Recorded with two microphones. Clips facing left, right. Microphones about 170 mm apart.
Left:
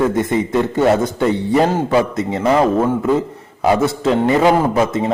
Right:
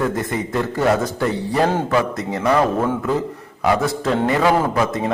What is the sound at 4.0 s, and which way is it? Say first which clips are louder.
A man's voice: left 5 dB; 20° left (ahead or behind).